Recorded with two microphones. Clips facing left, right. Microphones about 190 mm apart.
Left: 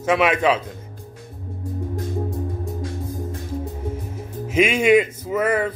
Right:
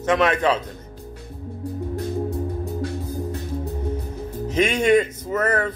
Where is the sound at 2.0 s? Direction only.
65° right (ahead or behind).